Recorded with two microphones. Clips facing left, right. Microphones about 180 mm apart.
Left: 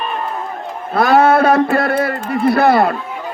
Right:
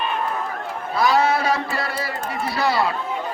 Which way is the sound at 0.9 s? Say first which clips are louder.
Left 7 dB; 55° left (ahead or behind).